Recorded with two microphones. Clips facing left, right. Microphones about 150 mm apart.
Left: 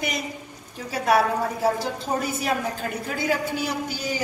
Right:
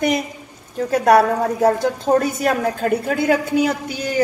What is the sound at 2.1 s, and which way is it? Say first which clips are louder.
A woman's voice: right 6 dB; 60° right (ahead or behind).